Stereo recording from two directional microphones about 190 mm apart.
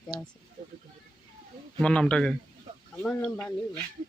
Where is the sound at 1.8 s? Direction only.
5° left (ahead or behind).